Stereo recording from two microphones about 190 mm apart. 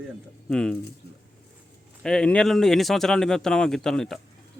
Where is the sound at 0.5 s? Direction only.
5° left (ahead or behind).